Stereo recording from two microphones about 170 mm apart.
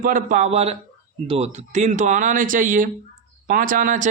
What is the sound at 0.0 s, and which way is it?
Speech, 50° right (ahead or behind).